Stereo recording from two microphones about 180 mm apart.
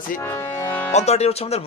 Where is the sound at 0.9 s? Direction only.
35° left (ahead or behind).